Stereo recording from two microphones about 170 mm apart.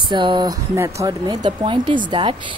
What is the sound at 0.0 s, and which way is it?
Speech, 30° right (ahead or behind).